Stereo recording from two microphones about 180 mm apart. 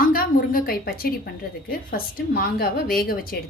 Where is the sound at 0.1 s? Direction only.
55° left (ahead or behind).